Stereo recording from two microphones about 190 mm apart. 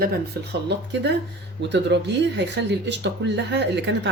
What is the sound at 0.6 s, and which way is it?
Speech, 65° right (ahead or behind).